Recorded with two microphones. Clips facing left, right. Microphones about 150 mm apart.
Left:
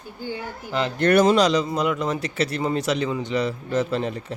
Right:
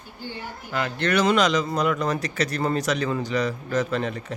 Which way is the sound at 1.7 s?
20° left (ahead or behind).